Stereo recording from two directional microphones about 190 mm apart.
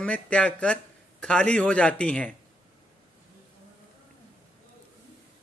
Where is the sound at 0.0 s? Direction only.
5° left (ahead or behind).